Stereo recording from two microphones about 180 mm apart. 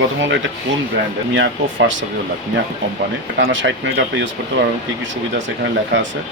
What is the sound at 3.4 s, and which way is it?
Speech, 90° right.